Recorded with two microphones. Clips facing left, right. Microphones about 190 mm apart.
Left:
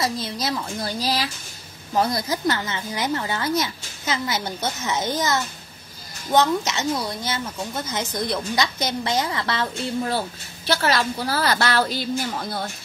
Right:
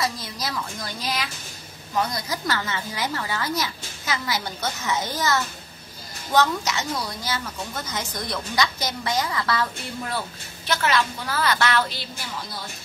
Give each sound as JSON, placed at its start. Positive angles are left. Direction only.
{"t": 0.0, "sound": "a child's voice", "side_deg": 25}